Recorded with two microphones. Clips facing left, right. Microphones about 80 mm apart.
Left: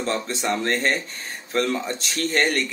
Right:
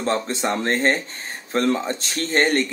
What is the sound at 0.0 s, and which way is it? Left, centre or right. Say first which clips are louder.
Speech: right 3 dB; right.